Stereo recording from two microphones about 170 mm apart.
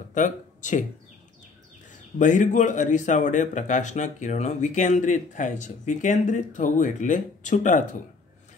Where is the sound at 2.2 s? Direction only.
45° left (ahead or behind).